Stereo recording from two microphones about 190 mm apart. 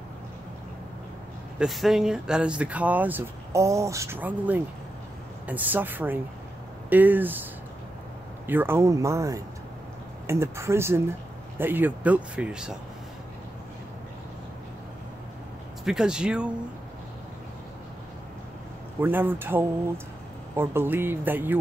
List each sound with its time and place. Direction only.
1.6 s speech: centre (ahead or behind)
8.5 s speech: 10° right (ahead or behind)
15.8 s speech: 5° right (ahead or behind)
18.9 s speech: 10° right (ahead or behind)